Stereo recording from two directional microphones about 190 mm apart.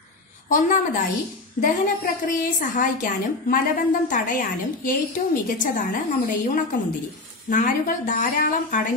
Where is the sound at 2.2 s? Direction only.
45° left (ahead or behind).